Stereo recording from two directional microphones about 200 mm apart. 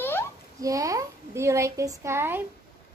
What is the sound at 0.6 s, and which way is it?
A child's voice, 15° right (ahead or behind).